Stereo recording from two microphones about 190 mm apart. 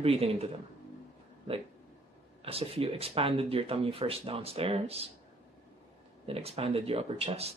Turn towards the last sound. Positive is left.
turn(degrees=-30)  # may be behind; listen again after turning